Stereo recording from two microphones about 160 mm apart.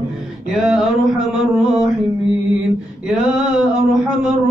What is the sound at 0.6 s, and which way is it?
Male singing, 5° right (ahead or behind).